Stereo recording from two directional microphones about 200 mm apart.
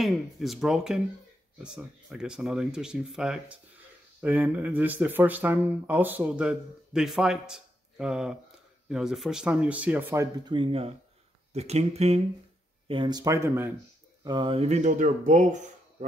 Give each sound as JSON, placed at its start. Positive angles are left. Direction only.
{"t": 0.0, "sound": "speech", "side_deg": 0}
{"t": 10.4, "sound": "speech", "side_deg": -25}
{"t": 14.2, "sound": "speech", "side_deg": -25}